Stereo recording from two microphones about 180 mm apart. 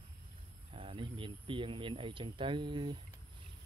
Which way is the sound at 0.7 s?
30° right (ahead or behind).